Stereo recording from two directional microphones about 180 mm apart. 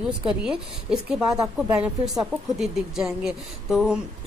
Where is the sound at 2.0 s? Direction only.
Centre (ahead or behind).